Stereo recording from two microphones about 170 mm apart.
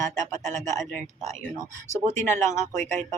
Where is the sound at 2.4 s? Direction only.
45° right (ahead or behind).